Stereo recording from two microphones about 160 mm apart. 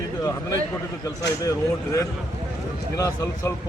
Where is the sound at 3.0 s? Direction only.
20° left (ahead or behind).